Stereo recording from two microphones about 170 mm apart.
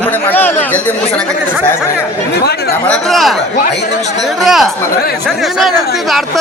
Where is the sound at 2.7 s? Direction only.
5° left (ahead or behind).